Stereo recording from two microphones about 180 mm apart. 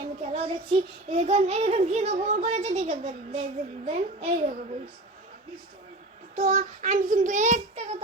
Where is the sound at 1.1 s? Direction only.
35° right (ahead or behind).